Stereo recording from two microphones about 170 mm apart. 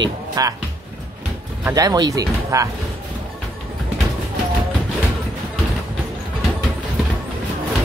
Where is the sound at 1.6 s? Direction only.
20° right (ahead or behind).